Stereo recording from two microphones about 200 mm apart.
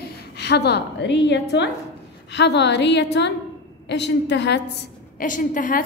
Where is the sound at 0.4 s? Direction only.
55° left (ahead or behind).